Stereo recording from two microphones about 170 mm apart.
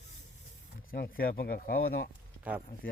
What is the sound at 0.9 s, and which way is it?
Speech, 60° left (ahead or behind).